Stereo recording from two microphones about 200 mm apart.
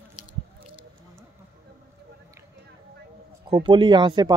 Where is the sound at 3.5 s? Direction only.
25° right (ahead or behind).